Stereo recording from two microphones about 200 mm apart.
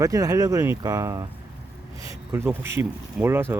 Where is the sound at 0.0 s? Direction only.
15° right (ahead or behind).